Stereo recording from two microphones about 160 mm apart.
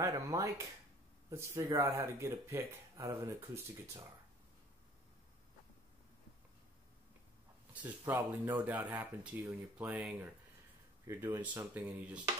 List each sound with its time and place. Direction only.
0.0 s speech: 20° right (ahead or behind)
8.1 s speech: 10° right (ahead or behind)